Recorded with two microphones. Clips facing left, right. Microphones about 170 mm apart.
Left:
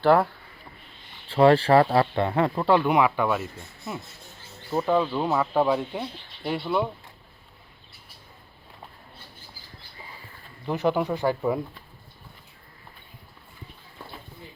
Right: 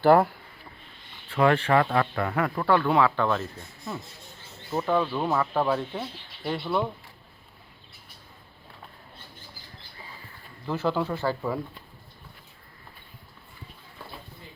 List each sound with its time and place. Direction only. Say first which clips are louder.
0.0 s speech: right 1 dB; 5° right (ahead or behind)
1.3 s speech: left 4 dB; 30° left (ahead or behind); by 3.4 s 10° left (ahead or behind)
4.7 s speech: left 2 dB; 15° left (ahead or behind)
10.7 s speech: left 3 dB; 15° left (ahead or behind)